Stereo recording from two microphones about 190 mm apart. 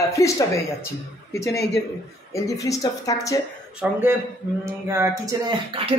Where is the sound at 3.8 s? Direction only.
10° right (ahead or behind).